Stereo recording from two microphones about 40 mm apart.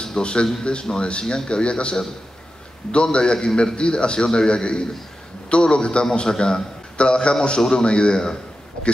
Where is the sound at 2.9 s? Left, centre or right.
Left.